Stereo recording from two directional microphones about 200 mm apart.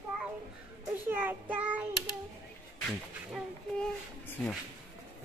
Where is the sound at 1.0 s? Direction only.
10° right (ahead or behind).